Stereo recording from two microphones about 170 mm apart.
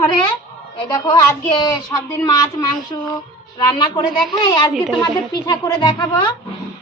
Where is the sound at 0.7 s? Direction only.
25° left (ahead or behind).